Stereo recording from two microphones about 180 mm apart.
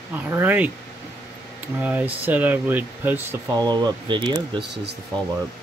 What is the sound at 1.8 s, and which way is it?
Speech, 10° right (ahead or behind).